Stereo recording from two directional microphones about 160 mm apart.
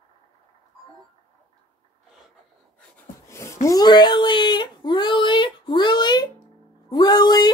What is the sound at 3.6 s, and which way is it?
Speech, 25° left (ahead or behind).